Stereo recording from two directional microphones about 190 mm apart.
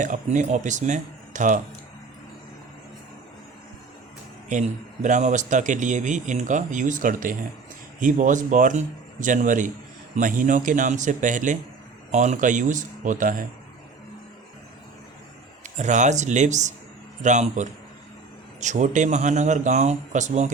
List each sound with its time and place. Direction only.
0.0 s speech: 40° right (ahead or behind)
5.0 s speech: 40° right (ahead or behind)
15.6 s speech: 40° right (ahead or behind)